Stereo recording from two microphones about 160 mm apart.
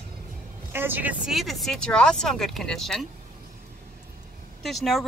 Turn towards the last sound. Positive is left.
turn(degrees=0)  # may be behind; listen again after turning